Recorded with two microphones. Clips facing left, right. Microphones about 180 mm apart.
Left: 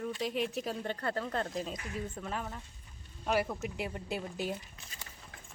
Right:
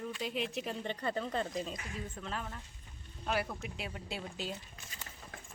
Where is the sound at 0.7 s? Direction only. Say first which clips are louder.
Left 1 dB; centre (ahead or behind).